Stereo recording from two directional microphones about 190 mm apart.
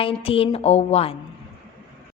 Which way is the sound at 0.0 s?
30° left (ahead or behind).